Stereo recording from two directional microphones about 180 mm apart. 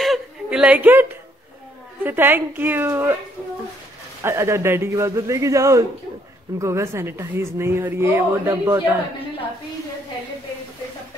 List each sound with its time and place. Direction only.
0.0 s a sound: centre (ahead or behind)
2.0 s speech: 10° right (ahead or behind)
4.2 s speech: 15° right (ahead or behind)